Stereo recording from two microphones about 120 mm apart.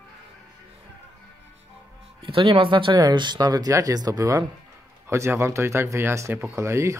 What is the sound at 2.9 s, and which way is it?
A man's voice, 35° right (ahead or behind).